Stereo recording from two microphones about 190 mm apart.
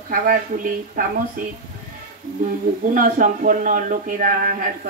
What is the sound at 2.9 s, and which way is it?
Speech, 45° right (ahead or behind).